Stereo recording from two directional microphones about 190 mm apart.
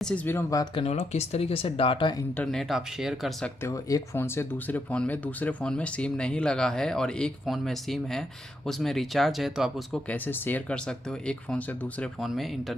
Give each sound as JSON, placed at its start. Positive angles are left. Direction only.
{"t": 0.0, "sound": "speech", "side_deg": 5}
{"t": 0.8, "sound": "speech", "side_deg": 35}
{"t": 2.3, "sound": "speech", "side_deg": 5}
{"t": 3.6, "sound": "speech", "side_deg": 15}